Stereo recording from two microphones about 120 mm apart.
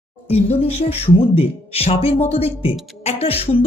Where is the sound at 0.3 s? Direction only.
55° left (ahead or behind).